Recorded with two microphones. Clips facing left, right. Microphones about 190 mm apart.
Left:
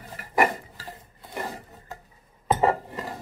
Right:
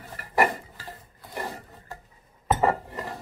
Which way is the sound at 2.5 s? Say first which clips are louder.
Left 1 dB; 15° left (ahead or behind).